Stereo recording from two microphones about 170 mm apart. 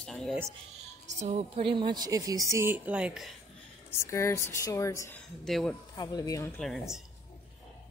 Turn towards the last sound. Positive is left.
turn(degrees=0)  # may be behind; listen again after turning